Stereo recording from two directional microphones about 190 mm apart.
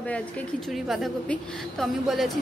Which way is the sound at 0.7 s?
Centre (ahead or behind).